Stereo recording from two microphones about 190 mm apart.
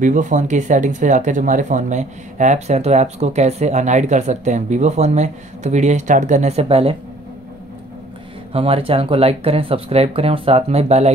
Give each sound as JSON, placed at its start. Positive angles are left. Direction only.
{"t": 0.0, "sound": "speech", "side_deg": -40}
{"t": 8.5, "sound": "speech", "side_deg": -30}